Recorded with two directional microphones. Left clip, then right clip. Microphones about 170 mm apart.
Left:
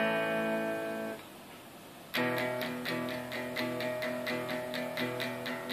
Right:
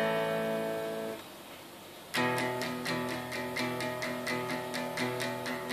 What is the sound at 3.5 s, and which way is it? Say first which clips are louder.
Music: left 1 dB; 35° left (ahead or behind).